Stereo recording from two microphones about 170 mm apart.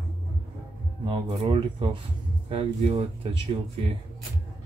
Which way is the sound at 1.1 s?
30° right (ahead or behind).